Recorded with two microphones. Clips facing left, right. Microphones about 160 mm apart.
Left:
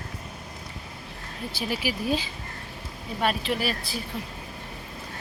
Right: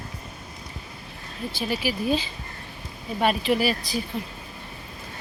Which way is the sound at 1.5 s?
10° left (ahead or behind).